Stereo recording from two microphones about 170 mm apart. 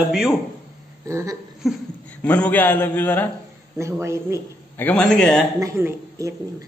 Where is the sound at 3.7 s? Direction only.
15° right (ahead or behind).